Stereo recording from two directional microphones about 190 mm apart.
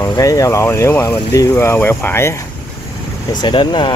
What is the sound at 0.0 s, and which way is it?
Speech, 15° left (ahead or behind).